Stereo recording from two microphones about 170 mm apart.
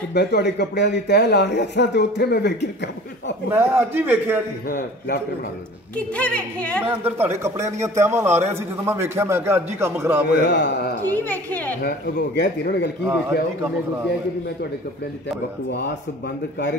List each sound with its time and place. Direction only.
0.1 s a man's voice: 80° left
3.5 s speech: 10° right (ahead or behind)
4.6 s a man's voice: 65° left (ahead or behind)
6.1 s a woman's voice: 10° left (ahead or behind)
6.8 s speech: 10° right (ahead or behind)
10.4 s a man's voice: 85° left
11.1 s a woman's voice: 10° left (ahead or behind)
11.8 s a man's voice: 70° left (ahead or behind)